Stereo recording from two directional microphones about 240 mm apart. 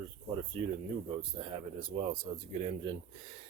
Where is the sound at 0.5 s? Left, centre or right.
Right.